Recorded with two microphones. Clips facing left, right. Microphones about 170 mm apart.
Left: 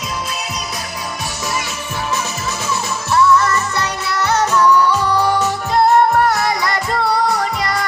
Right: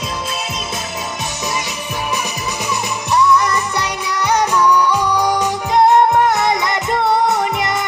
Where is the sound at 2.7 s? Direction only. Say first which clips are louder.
Even; 15° right (ahead or behind).